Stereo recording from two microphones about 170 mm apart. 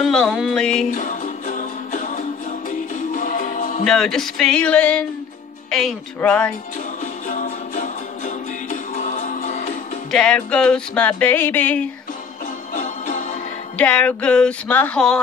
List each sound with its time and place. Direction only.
0.0 s speech: 5° left (ahead or behind)
0.9 s music: 50° left (ahead or behind)
3.8 s speech: 5° left (ahead or behind)
6.1 s music: 5° left (ahead or behind)
7.0 s music: 50° left (ahead or behind)
10.1 s music: 5° left (ahead or behind)
12.7 s music: 50° left (ahead or behind)
13.7 s music: 10° left (ahead or behind)